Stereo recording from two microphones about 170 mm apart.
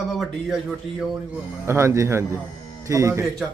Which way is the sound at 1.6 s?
15° right (ahead or behind).